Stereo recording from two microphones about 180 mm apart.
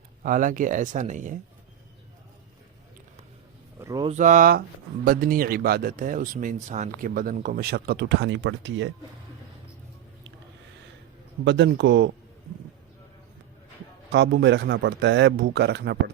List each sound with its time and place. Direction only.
0.2 s speech: 45° right (ahead or behind)
3.8 s a sound: 20° right (ahead or behind)
4.1 s speech: 45° right (ahead or behind); by 8.9 s 90° right
11.4 s speech: 80° right
14.1 s speech: 70° right (ahead or behind)